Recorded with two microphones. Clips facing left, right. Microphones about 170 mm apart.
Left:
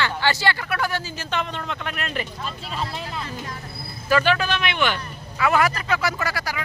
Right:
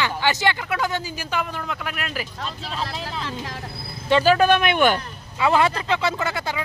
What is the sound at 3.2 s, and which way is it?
Speech, 90° right.